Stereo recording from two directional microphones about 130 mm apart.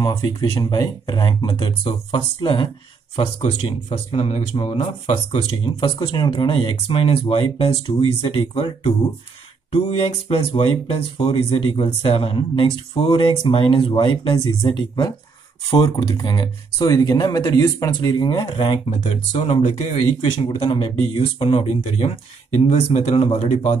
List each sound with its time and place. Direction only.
0.0 s speech: 30° left (ahead or behind)
3.3 s speech: 60° left (ahead or behind)
5.8 s speech: 40° left (ahead or behind)
18.9 s speech: 50° left (ahead or behind)
20.2 s speech: 40° left (ahead or behind)